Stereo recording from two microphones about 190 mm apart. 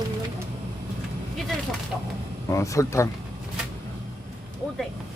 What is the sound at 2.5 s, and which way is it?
Speech, 15° left (ahead or behind).